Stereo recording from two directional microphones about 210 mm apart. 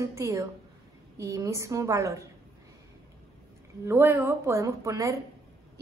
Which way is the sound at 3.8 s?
10° right (ahead or behind).